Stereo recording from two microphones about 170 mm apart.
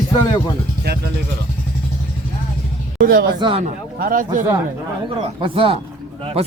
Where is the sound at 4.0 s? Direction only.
55° right (ahead or behind).